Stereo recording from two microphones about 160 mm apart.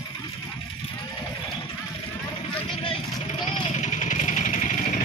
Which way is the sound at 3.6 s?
50° left (ahead or behind).